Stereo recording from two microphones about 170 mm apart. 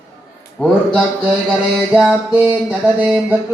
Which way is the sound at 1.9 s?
5° right (ahead or behind).